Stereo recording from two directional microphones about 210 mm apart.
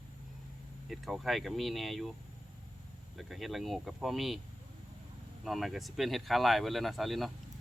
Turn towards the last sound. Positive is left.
turn(degrees=0)  # may be behind; listen again after turning